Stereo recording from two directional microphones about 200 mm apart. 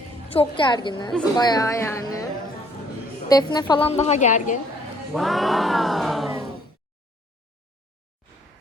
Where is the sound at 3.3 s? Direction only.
20° left (ahead or behind); by 4.6 s 40° left (ahead or behind).